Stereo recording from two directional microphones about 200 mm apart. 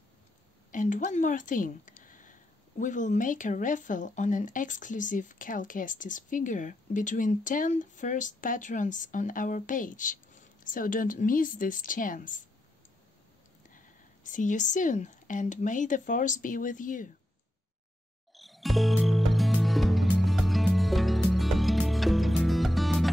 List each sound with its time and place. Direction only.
0.7 s speech: 40° left (ahead or behind)
13.7 s speech: 40° left (ahead or behind)
18.3 s music: centre (ahead or behind)